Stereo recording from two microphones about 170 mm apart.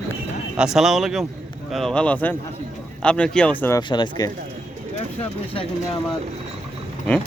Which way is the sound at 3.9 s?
25° left (ahead or behind).